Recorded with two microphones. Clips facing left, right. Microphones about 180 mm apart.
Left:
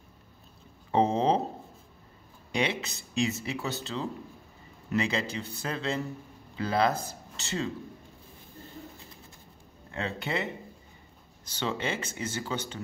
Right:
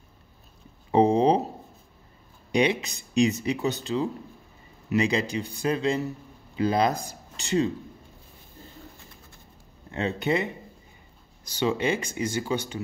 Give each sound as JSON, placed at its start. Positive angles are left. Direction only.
{"t": 0.9, "sound": "a sound", "side_deg": -15}
{"t": 2.5, "sound": "speech", "side_deg": -15}
{"t": 9.8, "sound": "speech", "side_deg": -20}
{"t": 11.6, "sound": "speech", "side_deg": -15}